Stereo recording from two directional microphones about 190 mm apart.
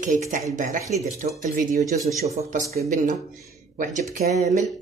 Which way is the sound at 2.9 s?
45° right (ahead or behind).